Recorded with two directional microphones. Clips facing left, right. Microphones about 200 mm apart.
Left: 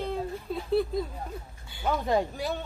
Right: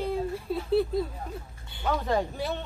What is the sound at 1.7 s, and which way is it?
Speech, 10° left (ahead or behind).